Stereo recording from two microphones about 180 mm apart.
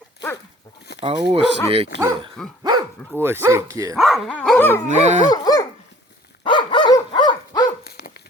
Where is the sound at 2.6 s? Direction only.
15° right (ahead or behind).